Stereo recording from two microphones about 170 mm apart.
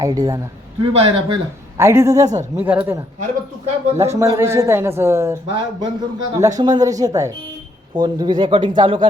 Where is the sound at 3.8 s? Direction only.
40° right (ahead or behind).